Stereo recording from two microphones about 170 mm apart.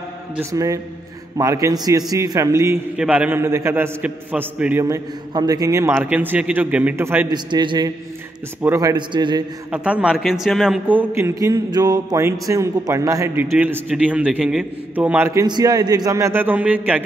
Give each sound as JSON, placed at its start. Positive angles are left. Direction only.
{"t": 0.4, "sound": "a man's voice", "side_deg": -20}
{"t": 4.8, "sound": "a man's voice", "side_deg": -20}
{"t": 7.2, "sound": "a man's voice", "side_deg": -25}
{"t": 9.7, "sound": "a man's voice", "side_deg": -10}
{"t": 15.4, "sound": "a man's voice", "side_deg": -25}